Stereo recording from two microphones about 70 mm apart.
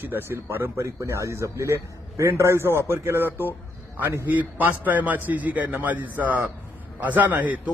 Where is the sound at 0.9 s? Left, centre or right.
Right.